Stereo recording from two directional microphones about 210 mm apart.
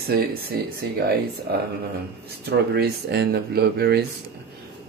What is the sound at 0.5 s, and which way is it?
Speech, 45° right (ahead or behind).